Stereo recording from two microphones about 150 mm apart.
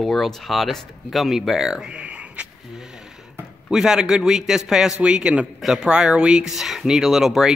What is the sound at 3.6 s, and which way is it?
Speech, 5° right (ahead or behind).